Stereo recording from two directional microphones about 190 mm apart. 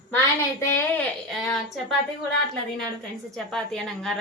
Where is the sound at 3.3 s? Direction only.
Centre (ahead or behind).